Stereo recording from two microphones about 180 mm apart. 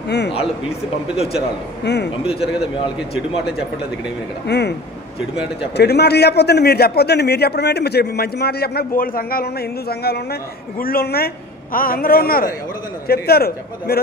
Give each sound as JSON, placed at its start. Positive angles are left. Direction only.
{"t": 1.1, "sound": "a man's voice", "side_deg": 35}
{"t": 4.5, "sound": "speech", "side_deg": 70}
{"t": 5.8, "sound": "a man's voice", "side_deg": 65}